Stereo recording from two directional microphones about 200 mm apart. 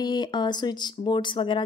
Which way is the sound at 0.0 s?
20° left (ahead or behind).